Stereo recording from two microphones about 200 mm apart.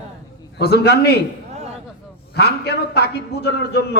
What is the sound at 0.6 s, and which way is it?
Speech, 55° left (ahead or behind).